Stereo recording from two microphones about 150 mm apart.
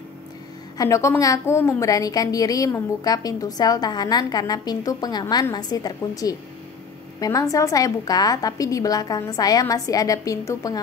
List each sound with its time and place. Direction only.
0.7 s a woman's voice: 20° left (ahead or behind)